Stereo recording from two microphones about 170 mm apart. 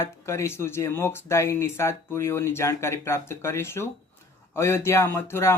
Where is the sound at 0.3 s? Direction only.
15° left (ahead or behind).